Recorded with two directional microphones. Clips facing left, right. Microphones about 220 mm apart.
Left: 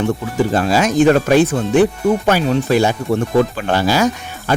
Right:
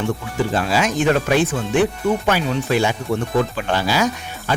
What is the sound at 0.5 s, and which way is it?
Speech, 40° left (ahead or behind).